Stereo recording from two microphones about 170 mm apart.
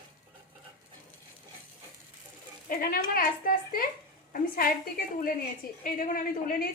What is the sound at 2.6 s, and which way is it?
A woman's voice, 55° left (ahead or behind).